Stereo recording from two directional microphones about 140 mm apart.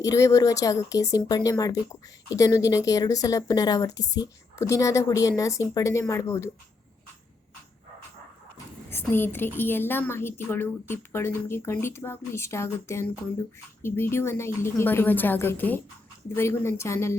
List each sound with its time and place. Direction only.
0.0 s a woman's voice: 20° left (ahead or behind)
8.9 s a woman's voice: 15° left (ahead or behind)